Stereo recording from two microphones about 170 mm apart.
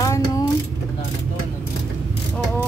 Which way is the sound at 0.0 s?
20° left (ahead or behind).